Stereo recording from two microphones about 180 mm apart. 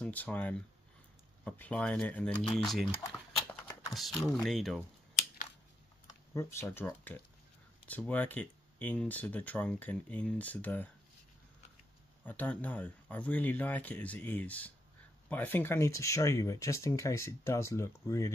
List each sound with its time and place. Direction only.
0.0 s speech: 10° left (ahead or behind)
6.3 s speech: 15° left (ahead or behind)
12.3 s speech: 10° left (ahead or behind)